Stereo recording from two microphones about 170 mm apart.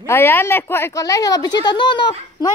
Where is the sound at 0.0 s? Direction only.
15° left (ahead or behind).